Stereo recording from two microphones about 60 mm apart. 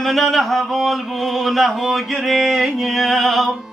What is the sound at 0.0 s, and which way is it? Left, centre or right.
Music, centre.